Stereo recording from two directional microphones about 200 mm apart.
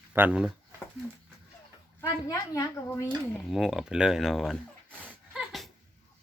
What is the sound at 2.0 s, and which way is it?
A woman's voice, 15° left (ahead or behind).